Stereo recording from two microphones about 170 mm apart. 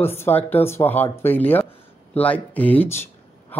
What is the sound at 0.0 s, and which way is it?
A man's voice, 15° left (ahead or behind).